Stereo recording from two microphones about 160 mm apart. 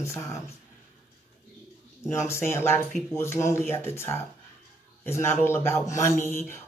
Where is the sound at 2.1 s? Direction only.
15° left (ahead or behind).